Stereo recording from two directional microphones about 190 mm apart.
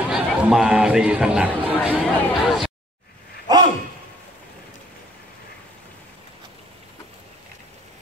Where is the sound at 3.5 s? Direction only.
20° right (ahead or behind).